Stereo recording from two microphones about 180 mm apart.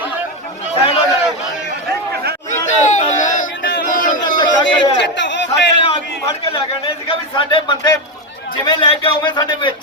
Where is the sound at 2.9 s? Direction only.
45° left (ahead or behind).